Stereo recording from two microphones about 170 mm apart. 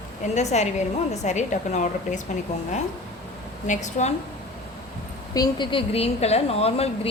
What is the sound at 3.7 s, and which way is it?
Speech, 45° left (ahead or behind).